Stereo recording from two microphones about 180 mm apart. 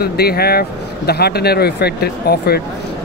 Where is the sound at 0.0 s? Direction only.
60° left (ahead or behind).